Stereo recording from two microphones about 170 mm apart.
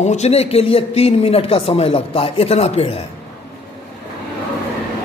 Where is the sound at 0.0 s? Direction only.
40° left (ahead or behind).